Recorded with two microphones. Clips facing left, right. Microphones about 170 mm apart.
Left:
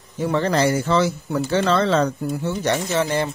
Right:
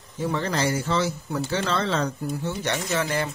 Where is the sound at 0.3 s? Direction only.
65° left (ahead or behind); by 2.0 s 80° left.